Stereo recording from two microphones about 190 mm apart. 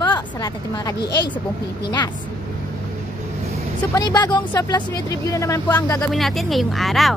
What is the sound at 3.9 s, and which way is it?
A woman's voice, 20° left (ahead or behind).